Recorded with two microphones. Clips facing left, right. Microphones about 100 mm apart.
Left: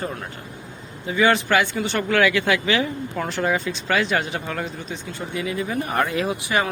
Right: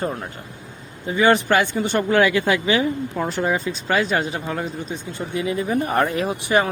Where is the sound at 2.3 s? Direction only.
30° right (ahead or behind).